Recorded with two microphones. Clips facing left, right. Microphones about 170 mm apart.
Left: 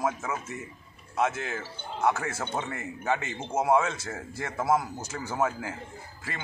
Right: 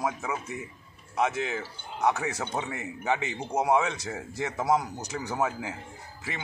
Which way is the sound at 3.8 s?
15° right (ahead or behind).